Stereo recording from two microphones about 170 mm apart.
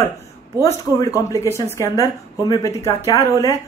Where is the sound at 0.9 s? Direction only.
20° left (ahead or behind).